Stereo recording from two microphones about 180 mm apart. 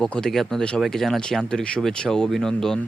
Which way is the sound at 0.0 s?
5° left (ahead or behind).